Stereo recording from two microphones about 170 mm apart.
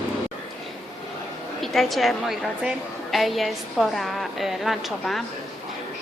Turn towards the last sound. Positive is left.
turn(degrees=0)  # may be behind; listen again after turning